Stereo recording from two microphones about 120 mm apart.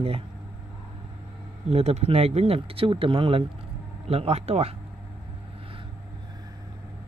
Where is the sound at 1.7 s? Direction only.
60° right (ahead or behind).